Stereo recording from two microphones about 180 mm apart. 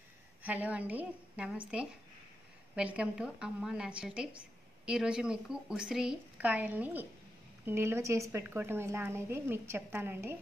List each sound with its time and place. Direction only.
0.4 s a woman's voice: 10° right (ahead or behind)
2.7 s a woman's voice: 5° right (ahead or behind)